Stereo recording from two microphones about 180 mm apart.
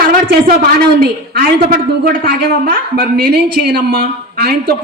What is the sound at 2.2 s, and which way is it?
A woman's voice, 60° right (ahead or behind).